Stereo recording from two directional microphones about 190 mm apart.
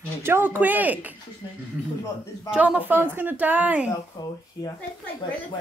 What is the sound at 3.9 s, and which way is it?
Speech, 20° left (ahead or behind).